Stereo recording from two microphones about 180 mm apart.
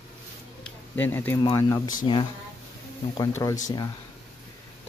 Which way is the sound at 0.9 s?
10° left (ahead or behind).